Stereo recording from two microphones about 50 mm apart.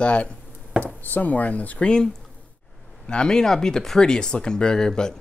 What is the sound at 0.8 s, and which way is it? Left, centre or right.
Speech, left.